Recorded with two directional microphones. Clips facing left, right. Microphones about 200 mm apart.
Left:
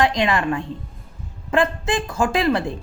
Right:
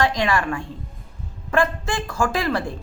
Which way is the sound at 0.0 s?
20° left (ahead or behind).